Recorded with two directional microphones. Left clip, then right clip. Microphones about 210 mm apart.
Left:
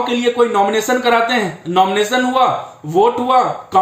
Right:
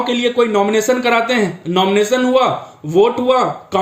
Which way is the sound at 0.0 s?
15° left (ahead or behind).